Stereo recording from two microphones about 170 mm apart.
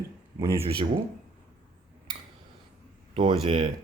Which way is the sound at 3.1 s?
35° right (ahead or behind).